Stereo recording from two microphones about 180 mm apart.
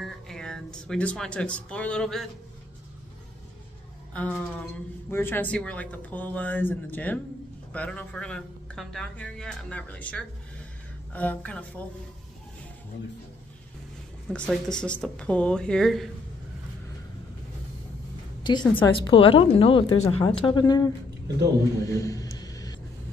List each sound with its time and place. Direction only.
0.0 s speech: 5° left (ahead or behind)
4.1 s a sound: 5° left (ahead or behind)
5.1 s speech: 10° left (ahead or behind)
14.3 s a woman's voice: 5° left (ahead or behind)
18.4 s a woman's voice: 25° left (ahead or behind)
21.8 s a sound: 20° left (ahead or behind)